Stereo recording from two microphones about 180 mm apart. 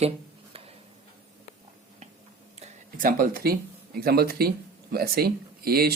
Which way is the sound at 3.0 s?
55° right (ahead or behind).